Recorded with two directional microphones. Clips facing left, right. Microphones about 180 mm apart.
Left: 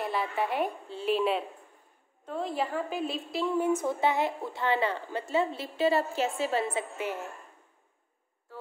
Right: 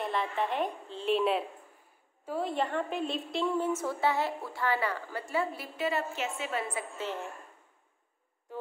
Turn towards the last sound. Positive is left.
turn(degrees=15)  # may be behind; listen again after turning